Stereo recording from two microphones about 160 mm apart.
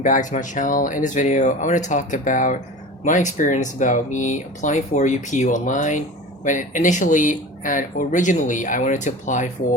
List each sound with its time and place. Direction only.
0.0 s speech: 55° left (ahead or behind)